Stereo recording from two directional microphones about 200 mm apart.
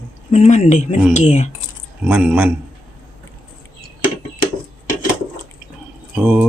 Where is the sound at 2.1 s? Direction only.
5° right (ahead or behind).